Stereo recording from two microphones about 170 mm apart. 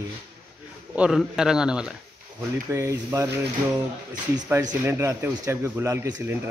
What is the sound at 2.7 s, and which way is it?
Speech, 15° right (ahead or behind).